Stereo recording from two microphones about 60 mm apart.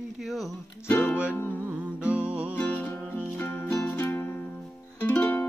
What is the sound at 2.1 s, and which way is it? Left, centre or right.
Music, centre.